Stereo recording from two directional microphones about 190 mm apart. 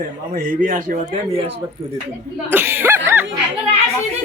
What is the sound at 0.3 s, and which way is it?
Speech, 45° right (ahead or behind).